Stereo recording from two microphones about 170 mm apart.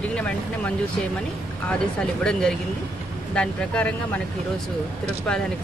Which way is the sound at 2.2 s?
5° left (ahead or behind).